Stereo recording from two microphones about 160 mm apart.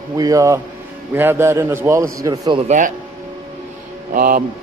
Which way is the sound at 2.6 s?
50° right (ahead or behind).